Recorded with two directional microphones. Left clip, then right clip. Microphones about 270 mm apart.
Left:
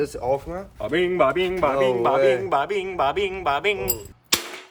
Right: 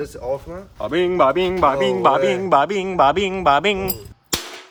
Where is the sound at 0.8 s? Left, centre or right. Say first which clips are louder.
Right 3 dB; centre.